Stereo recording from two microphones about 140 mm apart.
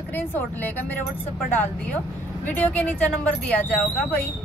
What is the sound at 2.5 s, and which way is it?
A woman's voice, 10° left (ahead or behind).